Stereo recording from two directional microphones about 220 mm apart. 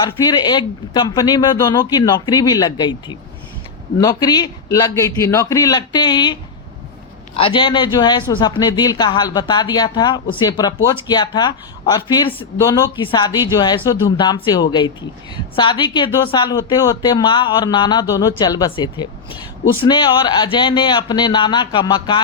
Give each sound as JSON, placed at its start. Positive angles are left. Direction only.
{"t": 0.0, "sound": "a man's voice", "side_deg": 20}